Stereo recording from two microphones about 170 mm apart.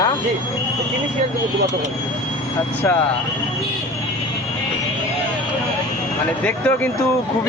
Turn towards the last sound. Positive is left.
turn(degrees=10)  # may be behind; listen again after turning